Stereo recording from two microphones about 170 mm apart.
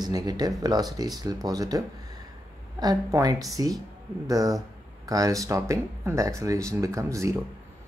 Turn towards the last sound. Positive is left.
turn(degrees=-20)  # may be behind; listen again after turning